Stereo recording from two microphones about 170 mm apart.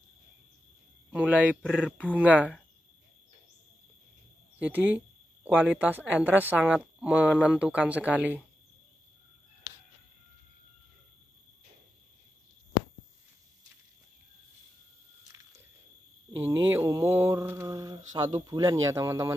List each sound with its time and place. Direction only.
1.1 s speech: 10° right (ahead or behind)
4.6 s speech: 10° right (ahead or behind)
16.3 s mantra: 15° right (ahead or behind)